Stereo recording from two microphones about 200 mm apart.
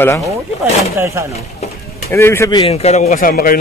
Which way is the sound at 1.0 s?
15° right (ahead or behind).